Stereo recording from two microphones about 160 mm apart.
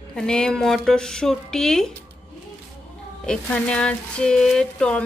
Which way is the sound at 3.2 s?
5° left (ahead or behind).